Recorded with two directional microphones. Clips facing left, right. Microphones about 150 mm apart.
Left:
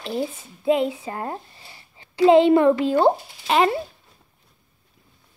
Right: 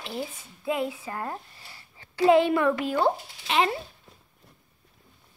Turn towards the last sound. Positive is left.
turn(degrees=45)  # may be behind; listen again after turning